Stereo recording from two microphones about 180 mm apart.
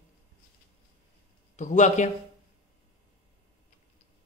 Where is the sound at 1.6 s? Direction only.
40° left (ahead or behind).